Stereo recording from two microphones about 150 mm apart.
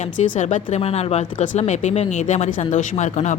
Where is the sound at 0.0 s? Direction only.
50° left (ahead or behind).